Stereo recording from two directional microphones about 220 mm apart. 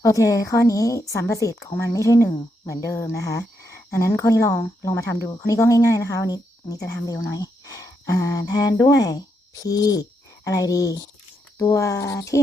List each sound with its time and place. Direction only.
0.0 s speech: 15° left (ahead or behind)
9.6 s hoot: 15° left (ahead or behind)
11.5 s speech: 15° left (ahead or behind)